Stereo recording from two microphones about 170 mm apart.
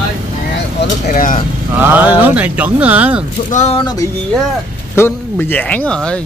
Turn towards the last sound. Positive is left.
turn(degrees=5)  # may be behind; listen again after turning